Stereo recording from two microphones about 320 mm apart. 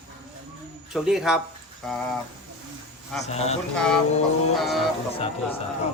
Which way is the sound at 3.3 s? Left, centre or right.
Centre.